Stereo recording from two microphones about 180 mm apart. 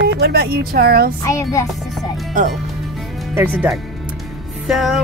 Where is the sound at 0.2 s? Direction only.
60° right (ahead or behind).